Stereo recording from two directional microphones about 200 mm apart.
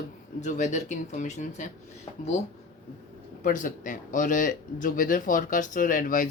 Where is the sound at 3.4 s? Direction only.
40° left (ahead or behind).